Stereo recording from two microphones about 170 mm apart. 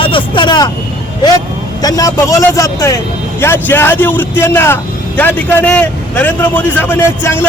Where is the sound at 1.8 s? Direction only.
20° left (ahead or behind).